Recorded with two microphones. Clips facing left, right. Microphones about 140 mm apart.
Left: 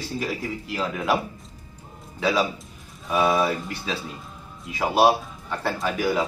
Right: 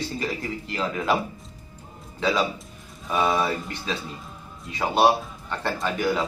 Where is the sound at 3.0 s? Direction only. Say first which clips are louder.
Left 2 dB; 5° left (ahead or behind).